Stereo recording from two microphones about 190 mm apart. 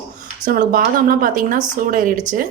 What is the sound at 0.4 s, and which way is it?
A woman's voice, 45° right (ahead or behind).